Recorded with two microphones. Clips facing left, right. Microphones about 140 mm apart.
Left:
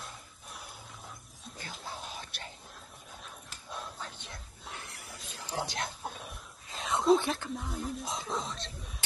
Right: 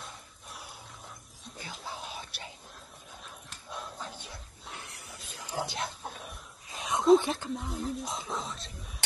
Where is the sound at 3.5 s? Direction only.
Centre (ahead or behind).